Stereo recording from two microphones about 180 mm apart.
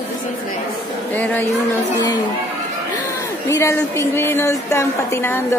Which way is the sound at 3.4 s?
15° left (ahead or behind).